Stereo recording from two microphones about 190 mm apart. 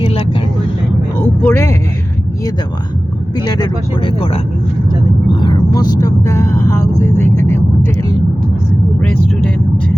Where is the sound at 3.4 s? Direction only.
20° left (ahead or behind).